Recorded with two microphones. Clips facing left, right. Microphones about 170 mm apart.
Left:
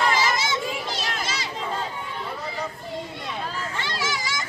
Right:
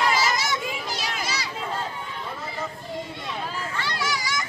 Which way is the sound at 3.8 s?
25° left (ahead or behind).